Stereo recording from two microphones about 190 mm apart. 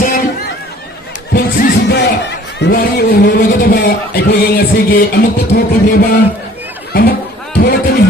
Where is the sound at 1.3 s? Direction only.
60° left (ahead or behind).